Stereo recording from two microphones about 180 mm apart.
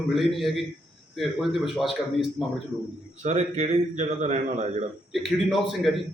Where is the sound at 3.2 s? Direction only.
40° right (ahead or behind).